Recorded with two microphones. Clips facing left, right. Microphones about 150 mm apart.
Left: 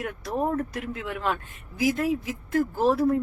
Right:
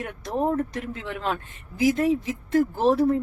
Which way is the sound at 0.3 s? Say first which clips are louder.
Right 3 dB; 30° right (ahead or behind).